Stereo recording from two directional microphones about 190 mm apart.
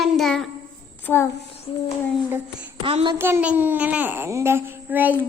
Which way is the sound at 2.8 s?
25° right (ahead or behind).